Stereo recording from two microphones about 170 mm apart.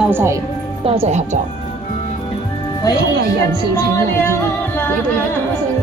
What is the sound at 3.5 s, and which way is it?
Music, 15° left (ahead or behind).